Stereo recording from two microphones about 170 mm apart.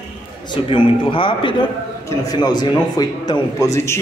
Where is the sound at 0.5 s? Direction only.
30° left (ahead or behind).